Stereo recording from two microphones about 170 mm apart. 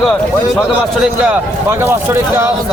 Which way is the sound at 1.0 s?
10° right (ahead or behind).